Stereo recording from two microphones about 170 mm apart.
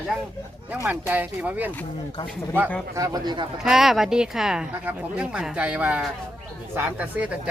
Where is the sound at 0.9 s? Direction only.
10° right (ahead or behind).